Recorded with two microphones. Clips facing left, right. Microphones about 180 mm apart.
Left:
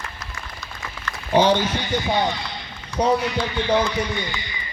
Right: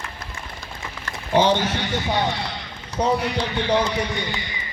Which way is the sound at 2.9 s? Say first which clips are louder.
Left 1 dB; 40° right (ahead or behind).